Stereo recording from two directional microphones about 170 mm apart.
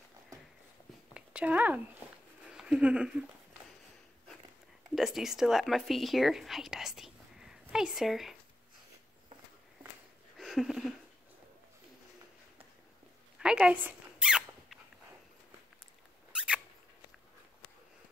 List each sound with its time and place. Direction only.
1.1 s a sound: 10° right (ahead or behind)
2.4 s speech: 5° right (ahead or behind)
4.9 s speech: centre (ahead or behind)
10.3 s a sound: centre (ahead or behind)
13.4 s squeak: 5° right (ahead or behind)
16.3 s mouse: 5° right (ahead or behind)